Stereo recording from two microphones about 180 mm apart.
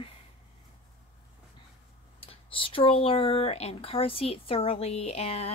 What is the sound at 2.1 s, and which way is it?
Speech, 30° left (ahead or behind).